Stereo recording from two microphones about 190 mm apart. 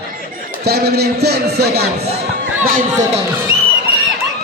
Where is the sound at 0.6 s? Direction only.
55° right (ahead or behind).